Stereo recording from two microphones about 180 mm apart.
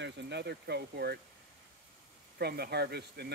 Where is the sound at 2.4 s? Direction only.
60° right (ahead or behind).